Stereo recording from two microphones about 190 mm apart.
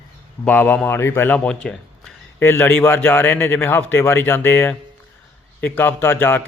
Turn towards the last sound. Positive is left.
turn(degrees=10)  # may be behind; listen again after turning